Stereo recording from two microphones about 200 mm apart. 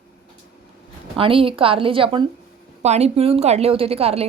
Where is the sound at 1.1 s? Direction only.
25° right (ahead or behind).